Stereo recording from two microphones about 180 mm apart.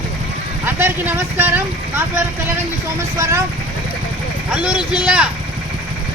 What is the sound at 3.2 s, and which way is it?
Speech, 15° right (ahead or behind).